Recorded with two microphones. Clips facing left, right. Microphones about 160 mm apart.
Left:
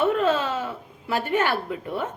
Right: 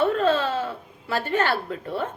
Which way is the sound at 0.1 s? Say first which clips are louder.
Right 1 dB; 15° left (ahead or behind).